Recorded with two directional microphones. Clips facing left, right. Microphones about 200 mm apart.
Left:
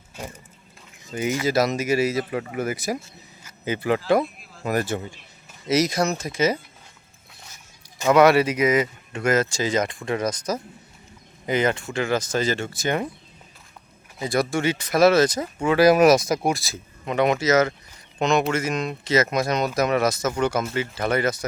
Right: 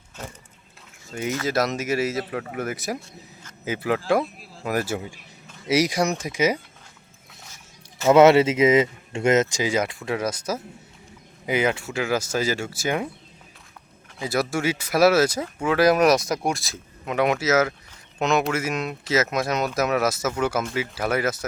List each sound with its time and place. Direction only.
0.2 s water: 10° left (ahead or behind)
1.1 s speech: centre (ahead or behind)
8.0 s speech: 25° right (ahead or behind); by 13.1 s 5° right (ahead or behind)
14.2 s speech: 5° right (ahead or behind)